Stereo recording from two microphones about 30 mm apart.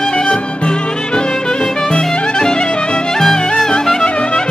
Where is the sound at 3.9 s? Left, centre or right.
Left.